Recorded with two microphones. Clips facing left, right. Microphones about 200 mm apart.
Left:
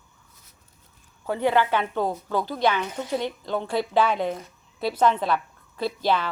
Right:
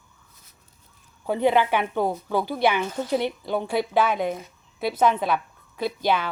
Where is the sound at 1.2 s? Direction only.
15° right (ahead or behind).